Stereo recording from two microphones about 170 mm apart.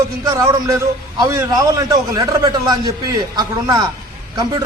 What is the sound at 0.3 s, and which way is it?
A man's voice, 20° right (ahead or behind).